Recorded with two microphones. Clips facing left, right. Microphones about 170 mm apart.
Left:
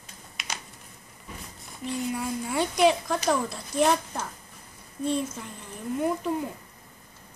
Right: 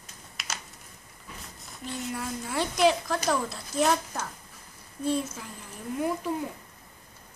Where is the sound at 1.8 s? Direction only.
Centre (ahead or behind).